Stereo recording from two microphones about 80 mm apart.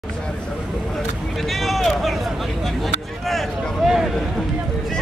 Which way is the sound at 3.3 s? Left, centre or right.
Centre.